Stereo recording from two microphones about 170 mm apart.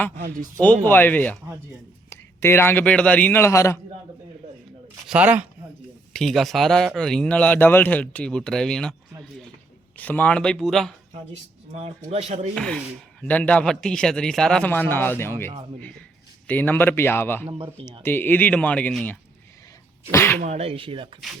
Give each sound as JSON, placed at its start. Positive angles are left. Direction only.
{"t": 0.9, "sound": "a man's voice", "side_deg": 10}
{"t": 5.0, "sound": "speech", "side_deg": -10}
{"t": 6.1, "sound": "speech", "side_deg": 0}
{"t": 10.0, "sound": "speech", "side_deg": 10}
{"t": 11.7, "sound": "speech", "side_deg": -35}
{"t": 12.5, "sound": "a man's voice", "side_deg": 5}
{"t": 17.4, "sound": "speech", "side_deg": -35}
{"t": 18.0, "sound": "a man's voice", "side_deg": 10}
{"t": 20.4, "sound": "speech", "side_deg": -40}